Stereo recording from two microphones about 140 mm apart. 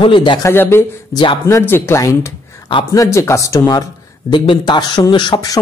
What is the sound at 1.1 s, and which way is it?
Speech, 30° left (ahead or behind).